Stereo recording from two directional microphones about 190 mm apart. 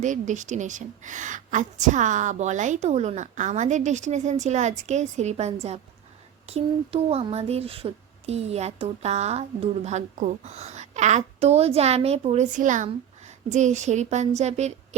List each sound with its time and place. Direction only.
0.0 s speech: 40° right (ahead or behind)